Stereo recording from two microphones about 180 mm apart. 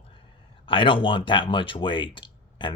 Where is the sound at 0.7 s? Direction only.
30° left (ahead or behind).